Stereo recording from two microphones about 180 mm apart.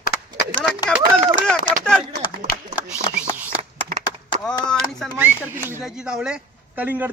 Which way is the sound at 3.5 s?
50° right (ahead or behind).